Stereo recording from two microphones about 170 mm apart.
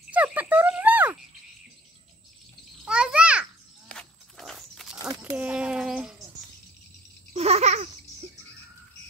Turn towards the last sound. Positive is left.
turn(degrees=-40)  # may be behind; listen again after turning